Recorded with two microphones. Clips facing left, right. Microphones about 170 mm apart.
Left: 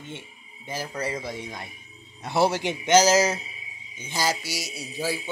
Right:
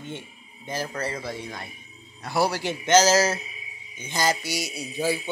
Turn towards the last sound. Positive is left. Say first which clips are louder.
# right 3 dB
turn(degrees=5)  # may be behind; listen again after turning